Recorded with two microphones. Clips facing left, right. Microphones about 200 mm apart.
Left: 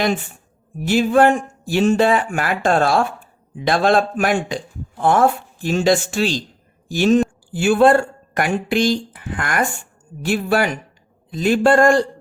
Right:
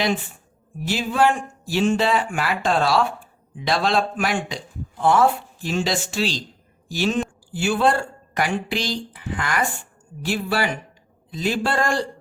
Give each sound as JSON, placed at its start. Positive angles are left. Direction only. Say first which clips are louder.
{"t": 0.9, "sound": "a woman's voice", "louder": "left 6 dB", "side_deg": 50}